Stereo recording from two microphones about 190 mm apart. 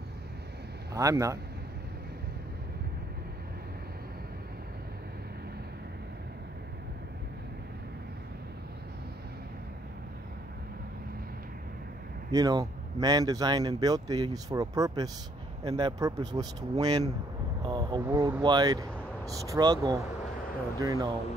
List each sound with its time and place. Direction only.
0.9 s speech: 15° right (ahead or behind)
12.3 s speech: 20° right (ahead or behind)
17.6 s vehicle: 25° right (ahead or behind)
18.0 s speech: 15° right (ahead or behind)